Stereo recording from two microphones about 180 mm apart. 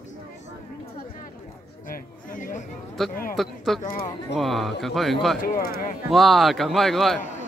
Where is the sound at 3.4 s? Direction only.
Centre (ahead or behind).